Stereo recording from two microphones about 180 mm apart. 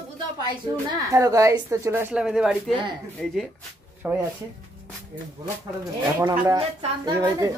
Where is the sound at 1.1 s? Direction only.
15° right (ahead or behind); by 3.4 s 5° left (ahead or behind).